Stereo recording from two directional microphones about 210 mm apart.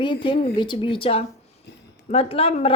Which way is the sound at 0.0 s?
20° left (ahead or behind).